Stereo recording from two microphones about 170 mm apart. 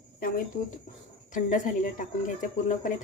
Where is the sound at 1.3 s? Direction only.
50° left (ahead or behind).